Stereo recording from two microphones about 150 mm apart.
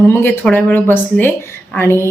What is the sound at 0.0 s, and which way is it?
A woman's voice, 15° left (ahead or behind).